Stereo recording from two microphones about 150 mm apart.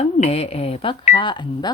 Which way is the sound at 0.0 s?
45° left (ahead or behind).